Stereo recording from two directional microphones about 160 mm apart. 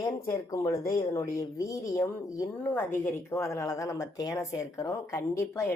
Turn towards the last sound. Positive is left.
turn(degrees=20)  # may be behind; listen again after turning